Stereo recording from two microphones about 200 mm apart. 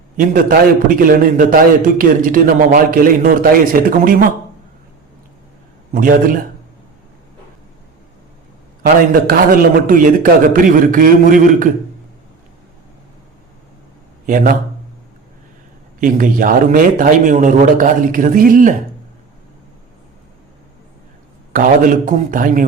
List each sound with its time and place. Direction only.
0.2 s a man's voice: 45° right (ahead or behind)
5.9 s a man's voice: 45° right (ahead or behind)
9.1 s a man's voice: 45° right (ahead or behind)
14.3 s a man's voice: 40° right (ahead or behind)
16.0 s a man's voice: 45° right (ahead or behind)
21.5 s a man's voice: 45° right (ahead or behind)